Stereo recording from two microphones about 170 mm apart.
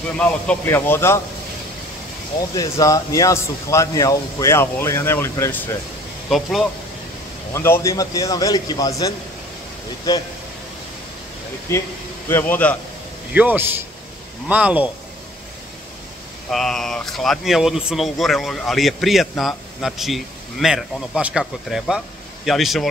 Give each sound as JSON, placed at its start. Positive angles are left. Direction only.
{"t": 0.2, "sound": "speech", "side_deg": 10}
{"t": 2.5, "sound": "speech", "side_deg": 20}
{"t": 6.2, "sound": "speech", "side_deg": 0}
{"t": 7.5, "sound": "a man's voice", "side_deg": 15}
{"t": 11.7, "sound": "speech", "side_deg": 15}
{"t": 13.3, "sound": "a man's voice", "side_deg": -10}
{"t": 16.4, "sound": "speech", "side_deg": 0}